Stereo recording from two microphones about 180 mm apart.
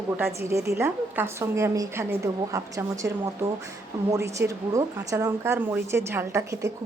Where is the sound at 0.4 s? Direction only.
15° right (ahead or behind).